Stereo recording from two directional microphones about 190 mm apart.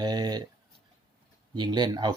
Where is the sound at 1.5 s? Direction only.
20° right (ahead or behind).